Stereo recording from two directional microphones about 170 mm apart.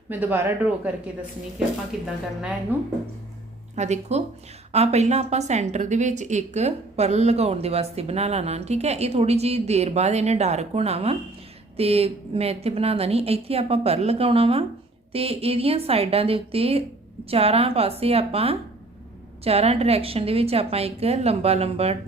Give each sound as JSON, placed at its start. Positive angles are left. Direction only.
{"t": 0.1, "sound": "speech", "side_deg": -10}
{"t": 2.7, "sound": "speech", "side_deg": -10}
{"t": 3.8, "sound": "a woman's voice", "side_deg": -40}